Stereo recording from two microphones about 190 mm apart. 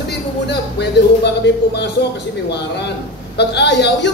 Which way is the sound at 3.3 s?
65° left (ahead or behind).